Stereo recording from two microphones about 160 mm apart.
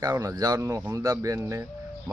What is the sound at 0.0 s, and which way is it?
Speech, 20° right (ahead or behind).